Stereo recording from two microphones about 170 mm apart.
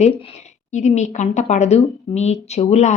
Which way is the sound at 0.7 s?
45° left (ahead or behind).